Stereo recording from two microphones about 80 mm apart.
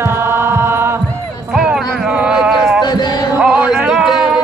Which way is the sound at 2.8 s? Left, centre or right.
Left.